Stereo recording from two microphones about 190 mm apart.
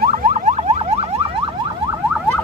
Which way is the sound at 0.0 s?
45° right (ahead or behind).